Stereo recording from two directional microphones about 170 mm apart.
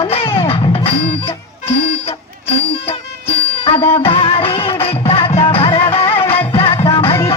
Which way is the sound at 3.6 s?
35° left (ahead or behind).